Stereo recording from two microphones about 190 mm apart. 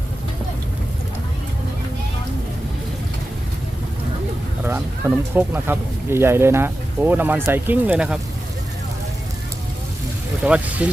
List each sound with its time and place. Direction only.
4.6 s speech: 10° right (ahead or behind)
10.4 s speech: 5° right (ahead or behind)